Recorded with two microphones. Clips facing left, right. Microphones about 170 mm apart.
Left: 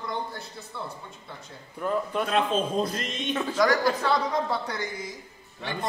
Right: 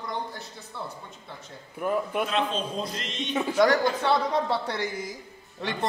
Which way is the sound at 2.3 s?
50° left (ahead or behind).